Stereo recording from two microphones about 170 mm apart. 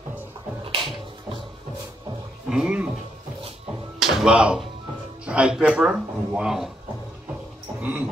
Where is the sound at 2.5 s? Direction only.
5° right (ahead or behind).